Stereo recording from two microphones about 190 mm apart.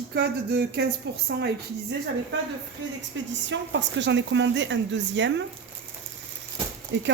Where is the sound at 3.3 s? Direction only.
70° right (ahead or behind).